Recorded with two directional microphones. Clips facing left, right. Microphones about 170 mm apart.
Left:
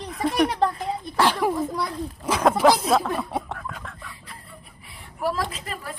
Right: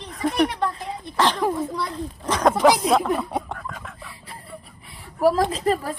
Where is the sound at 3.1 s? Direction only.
Centre (ahead or behind).